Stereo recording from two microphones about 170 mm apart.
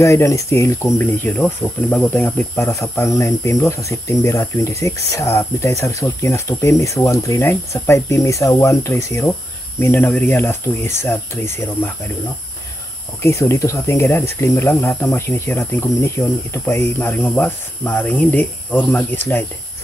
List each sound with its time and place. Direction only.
0.0 s speech: 15° left (ahead or behind)
13.2 s speech: 15° left (ahead or behind)